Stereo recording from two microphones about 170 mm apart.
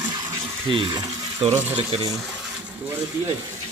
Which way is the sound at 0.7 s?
25° right (ahead or behind).